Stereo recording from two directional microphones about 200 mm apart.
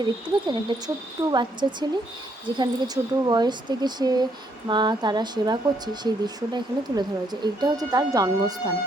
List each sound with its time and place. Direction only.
0.0 s speech: 20° right (ahead or behind)